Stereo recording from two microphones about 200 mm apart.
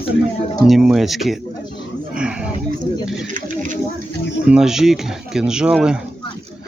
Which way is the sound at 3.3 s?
40° right (ahead or behind).